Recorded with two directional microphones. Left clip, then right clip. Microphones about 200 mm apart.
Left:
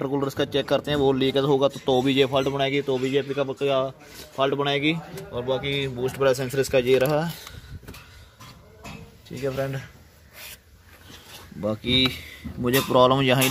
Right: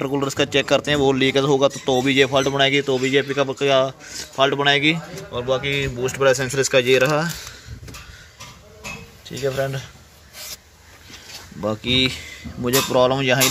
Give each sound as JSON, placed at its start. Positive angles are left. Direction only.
{"t": 0.0, "sound": "speech", "side_deg": 0}
{"t": 9.4, "sound": "speech", "side_deg": 5}
{"t": 11.6, "sound": "speech", "side_deg": 0}
{"t": 12.9, "sound": "speech", "side_deg": 20}